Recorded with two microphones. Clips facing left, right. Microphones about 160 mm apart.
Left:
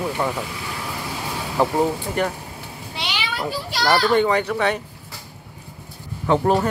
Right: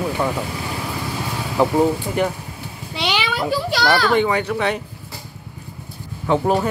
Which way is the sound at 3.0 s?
90° right.